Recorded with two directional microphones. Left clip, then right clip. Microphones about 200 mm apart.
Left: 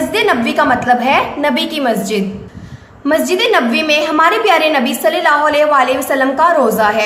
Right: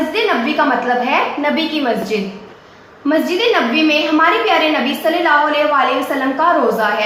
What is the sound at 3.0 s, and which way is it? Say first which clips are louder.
A woman's voice: left 2 dB; 55° left (ahead or behind).